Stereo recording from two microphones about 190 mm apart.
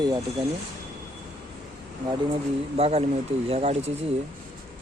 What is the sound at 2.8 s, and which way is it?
Speech, 30° right (ahead or behind).